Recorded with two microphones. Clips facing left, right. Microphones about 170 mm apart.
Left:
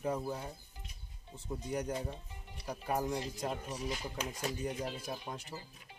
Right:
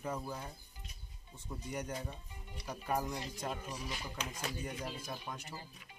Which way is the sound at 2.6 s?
30° left (ahead or behind).